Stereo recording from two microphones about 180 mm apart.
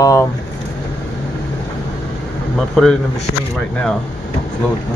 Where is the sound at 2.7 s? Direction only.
Centre (ahead or behind).